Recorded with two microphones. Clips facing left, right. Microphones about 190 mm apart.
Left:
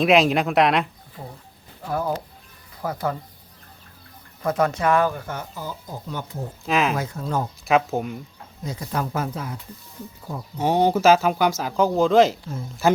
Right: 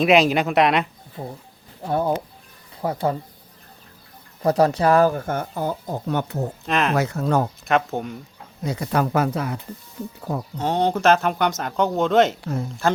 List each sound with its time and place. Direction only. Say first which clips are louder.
0.0 s speech: right 1 dB; centre (ahead or behind)
1.2 s speech: right 6 dB; 25° right (ahead or behind)
4.4 s speech: right 4 dB; 35° right (ahead or behind); by 6.5 s 70° right (ahead or behind)
6.7 s speech: left 1 dB; centre (ahead or behind)
6.9 s speech: right 5 dB; 75° right (ahead or behind)
7.6 s speech: left 1 dB; centre (ahead or behind)
8.6 s speech: right 5 dB; 70° right (ahead or behind)
10.6 s speech: left 2 dB; 10° left (ahead or behind)
12.4 s speech: right 6 dB; 70° right (ahead or behind)